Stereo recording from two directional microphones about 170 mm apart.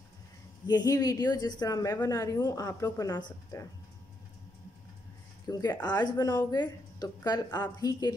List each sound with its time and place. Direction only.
0.7 s a woman's voice: 20° left (ahead or behind)
5.5 s a woman's voice: 25° left (ahead or behind)